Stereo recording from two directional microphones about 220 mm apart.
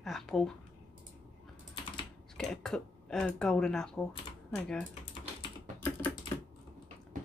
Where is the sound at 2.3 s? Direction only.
5° left (ahead or behind).